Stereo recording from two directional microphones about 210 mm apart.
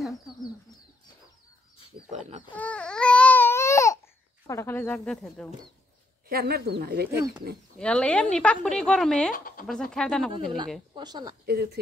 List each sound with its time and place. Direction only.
2.0 s pig: 35° right (ahead or behind)
2.5 s baby cry: 5° left (ahead or behind)
4.5 s speech: 10° left (ahead or behind)
6.2 s speech: 45° right (ahead or behind)
7.8 s a woman's voice: 5° left (ahead or behind)
9.3 s speech: 40° left (ahead or behind)
9.7 s a woman's voice: 5° left (ahead or behind)
10.3 s speech: 25° right (ahead or behind)
11.4 s speech: 50° right (ahead or behind)